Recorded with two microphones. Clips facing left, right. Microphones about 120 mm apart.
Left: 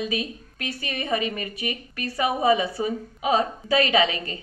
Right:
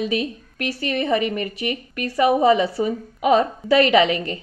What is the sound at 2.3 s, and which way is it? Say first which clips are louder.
Speech: right 5 dB; 25° right (ahead or behind).